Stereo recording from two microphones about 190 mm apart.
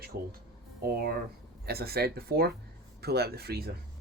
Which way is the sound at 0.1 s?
50° right (ahead or behind).